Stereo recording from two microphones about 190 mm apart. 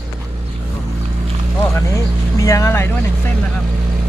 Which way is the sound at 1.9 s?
15° left (ahead or behind).